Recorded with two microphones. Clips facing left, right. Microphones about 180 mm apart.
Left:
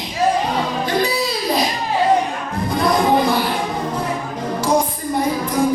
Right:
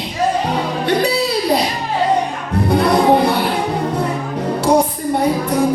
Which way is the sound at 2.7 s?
65° right (ahead or behind).